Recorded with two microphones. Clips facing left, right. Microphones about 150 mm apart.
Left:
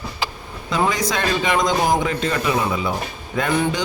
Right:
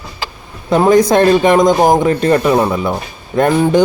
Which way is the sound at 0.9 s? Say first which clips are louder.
Right 13 dB; 50° right (ahead or behind).